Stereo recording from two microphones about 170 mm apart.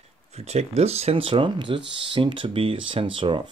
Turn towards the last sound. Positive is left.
turn(degrees=-30)  # may be behind; listen again after turning